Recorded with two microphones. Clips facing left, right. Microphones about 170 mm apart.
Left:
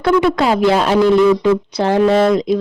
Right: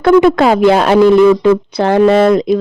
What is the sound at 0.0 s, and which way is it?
Speech, 55° right (ahead or behind).